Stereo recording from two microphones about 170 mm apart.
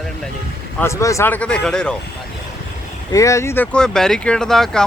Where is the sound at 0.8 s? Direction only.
15° left (ahead or behind).